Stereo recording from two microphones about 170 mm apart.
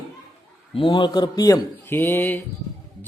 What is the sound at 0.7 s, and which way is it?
A man's voice, 30° left (ahead or behind).